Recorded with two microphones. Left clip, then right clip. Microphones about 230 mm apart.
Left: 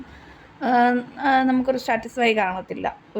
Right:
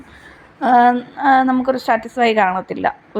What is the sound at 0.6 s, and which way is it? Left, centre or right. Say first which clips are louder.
A woman's voice: right 7 dB; centre.